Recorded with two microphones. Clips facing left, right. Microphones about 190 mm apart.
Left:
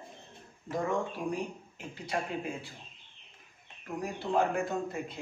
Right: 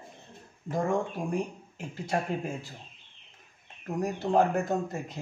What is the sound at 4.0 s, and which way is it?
A man's voice, 45° right (ahead or behind).